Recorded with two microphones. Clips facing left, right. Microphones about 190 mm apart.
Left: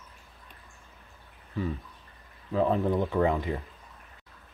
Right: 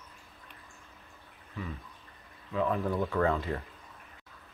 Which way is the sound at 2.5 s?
30° left (ahead or behind).